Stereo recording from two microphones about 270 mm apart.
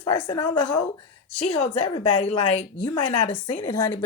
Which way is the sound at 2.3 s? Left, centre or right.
Left.